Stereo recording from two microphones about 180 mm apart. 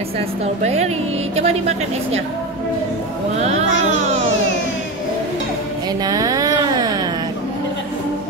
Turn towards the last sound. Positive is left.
turn(degrees=-20)  # may be behind; listen again after turning